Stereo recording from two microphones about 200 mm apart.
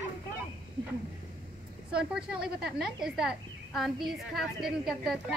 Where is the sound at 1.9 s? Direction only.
5° right (ahead or behind).